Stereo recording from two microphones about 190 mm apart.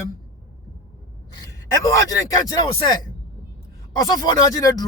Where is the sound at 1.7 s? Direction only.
20° left (ahead or behind).